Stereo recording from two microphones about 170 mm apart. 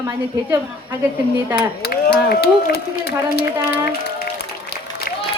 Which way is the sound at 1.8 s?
65° left (ahead or behind).